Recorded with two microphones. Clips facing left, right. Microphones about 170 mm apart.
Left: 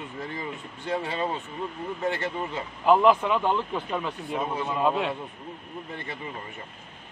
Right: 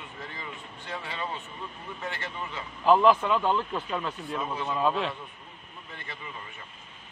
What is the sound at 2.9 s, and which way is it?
Speech, 15° left (ahead or behind).